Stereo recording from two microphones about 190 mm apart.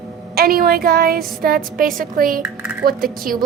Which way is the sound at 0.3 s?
50° right (ahead or behind).